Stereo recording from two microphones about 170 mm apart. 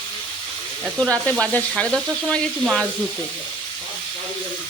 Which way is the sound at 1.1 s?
10° left (ahead or behind).